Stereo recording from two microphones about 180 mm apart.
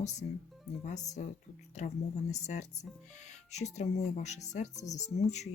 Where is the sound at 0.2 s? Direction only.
50° left (ahead or behind).